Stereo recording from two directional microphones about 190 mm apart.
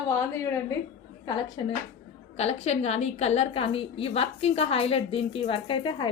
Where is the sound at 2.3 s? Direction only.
35° left (ahead or behind).